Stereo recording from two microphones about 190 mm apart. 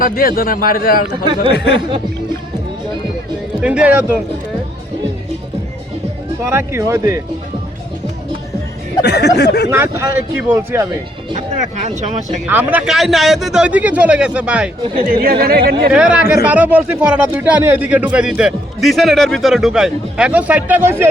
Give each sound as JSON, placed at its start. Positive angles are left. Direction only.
{"t": 0.0, "sound": "a man's voice", "side_deg": 50}
{"t": 1.5, "sound": "speech", "side_deg": 65}
{"t": 3.6, "sound": "speech", "side_deg": -5}
{"t": 6.4, "sound": "speech", "side_deg": -15}
{"t": 9.0, "sound": "speech", "side_deg": 60}
{"t": 9.6, "sound": "speech", "side_deg": -10}
{"t": 11.8, "sound": "speech", "side_deg": -40}
{"t": 12.5, "sound": "a man's voice", "side_deg": -10}
{"t": 15.0, "sound": "speech", "side_deg": -50}
{"t": 15.9, "sound": "speech", "side_deg": -5}